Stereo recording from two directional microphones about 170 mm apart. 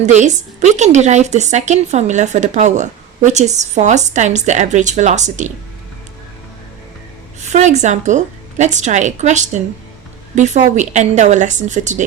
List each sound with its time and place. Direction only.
0.0 s a woman's voice: 45° right (ahead or behind)
7.5 s a woman's voice: 45° right (ahead or behind)